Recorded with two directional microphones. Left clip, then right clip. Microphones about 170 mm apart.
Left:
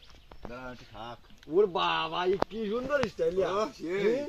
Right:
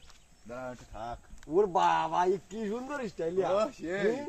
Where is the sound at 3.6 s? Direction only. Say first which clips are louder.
Even; 30° right (ahead or behind).